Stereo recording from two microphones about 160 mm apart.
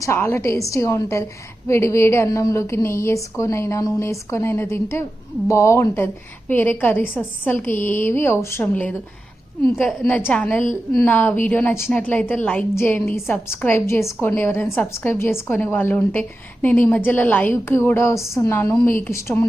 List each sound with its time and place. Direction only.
0.0 s a woman's voice: 15° left (ahead or behind)